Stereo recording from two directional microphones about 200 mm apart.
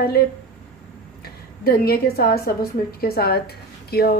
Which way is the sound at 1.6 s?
50° left (ahead or behind).